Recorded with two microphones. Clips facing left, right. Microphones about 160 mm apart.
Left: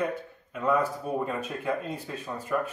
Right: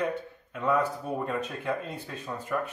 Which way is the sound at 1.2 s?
Centre (ahead or behind).